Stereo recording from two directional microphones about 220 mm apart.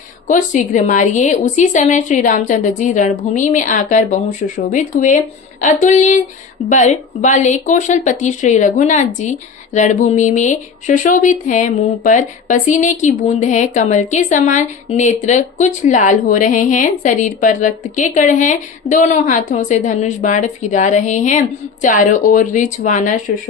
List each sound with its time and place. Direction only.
0.3 s speech: 35° left (ahead or behind)